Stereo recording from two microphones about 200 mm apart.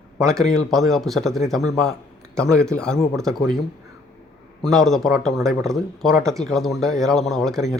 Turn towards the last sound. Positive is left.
turn(degrees=0)  # may be behind; listen again after turning